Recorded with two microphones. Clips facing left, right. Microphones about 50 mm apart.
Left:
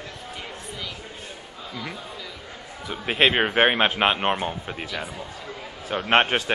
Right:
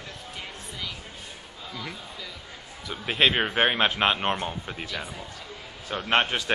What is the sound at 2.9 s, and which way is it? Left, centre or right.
A man's voice, centre.